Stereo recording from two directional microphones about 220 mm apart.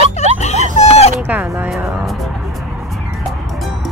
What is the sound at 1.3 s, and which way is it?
Music, 10° right (ahead or behind).